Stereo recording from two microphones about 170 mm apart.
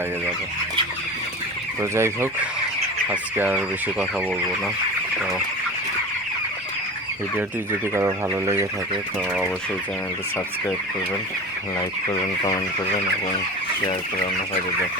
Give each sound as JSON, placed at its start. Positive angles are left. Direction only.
{"t": 1.8, "sound": "fowl", "side_deg": -15}
{"t": 4.3, "sound": "speech", "side_deg": -5}
{"t": 7.9, "sound": "fowl", "side_deg": -15}